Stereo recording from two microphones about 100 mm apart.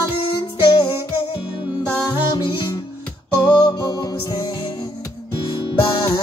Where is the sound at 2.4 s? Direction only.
50° left (ahead or behind).